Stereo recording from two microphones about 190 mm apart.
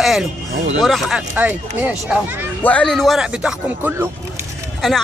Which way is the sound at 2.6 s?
5° left (ahead or behind).